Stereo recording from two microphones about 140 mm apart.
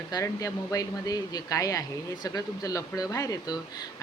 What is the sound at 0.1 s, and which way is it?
Speech, 25° left (ahead or behind).